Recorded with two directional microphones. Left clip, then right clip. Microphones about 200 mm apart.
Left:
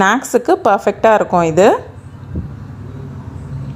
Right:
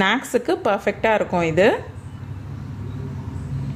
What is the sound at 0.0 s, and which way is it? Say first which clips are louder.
A woman's voice: left 7 dB; 20° left (ahead or behind).